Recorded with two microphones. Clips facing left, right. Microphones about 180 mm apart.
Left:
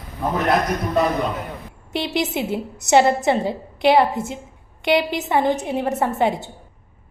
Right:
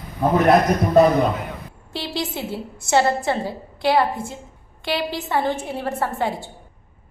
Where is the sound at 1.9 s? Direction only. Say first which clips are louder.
Left 5 dB; 20° left (ahead or behind).